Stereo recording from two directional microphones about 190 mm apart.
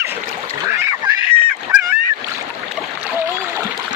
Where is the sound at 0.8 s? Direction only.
15° right (ahead or behind).